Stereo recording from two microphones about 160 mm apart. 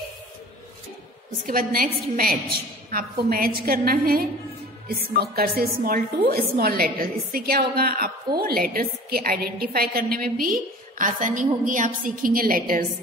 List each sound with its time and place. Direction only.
1.4 s a woman's voice: 65° right (ahead or behind)